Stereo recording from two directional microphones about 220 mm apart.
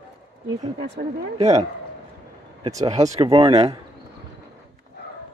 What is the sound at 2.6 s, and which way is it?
Speech, 15° right (ahead or behind).